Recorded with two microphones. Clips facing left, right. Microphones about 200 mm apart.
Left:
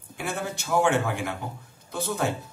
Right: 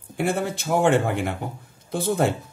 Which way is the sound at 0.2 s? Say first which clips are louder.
Right 7 dB; 55° right (ahead or behind).